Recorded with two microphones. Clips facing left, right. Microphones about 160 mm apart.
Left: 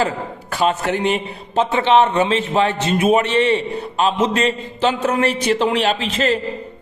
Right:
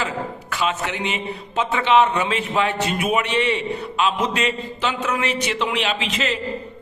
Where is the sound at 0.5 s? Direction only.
40° left (ahead or behind).